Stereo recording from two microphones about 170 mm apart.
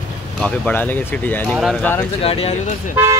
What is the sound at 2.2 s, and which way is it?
Speech, 35° left (ahead or behind).